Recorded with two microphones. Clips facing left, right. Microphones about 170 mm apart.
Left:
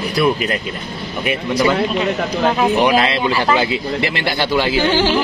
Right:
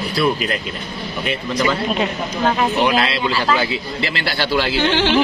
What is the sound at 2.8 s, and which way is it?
Speech, 15° left (ahead or behind).